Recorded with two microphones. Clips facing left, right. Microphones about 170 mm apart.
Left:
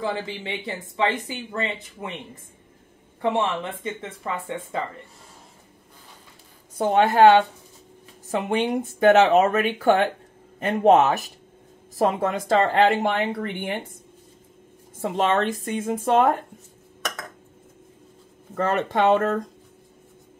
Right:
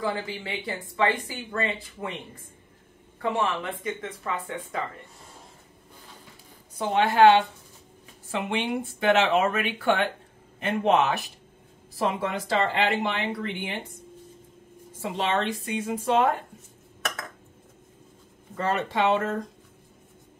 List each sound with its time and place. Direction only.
0.0 s speech: 25° left (ahead or behind)
3.2 s speech: 25° left (ahead or behind)
6.8 s speech: 40° left (ahead or behind)
15.0 s speech: 50° left (ahead or behind)
18.6 s speech: 50° left (ahead or behind)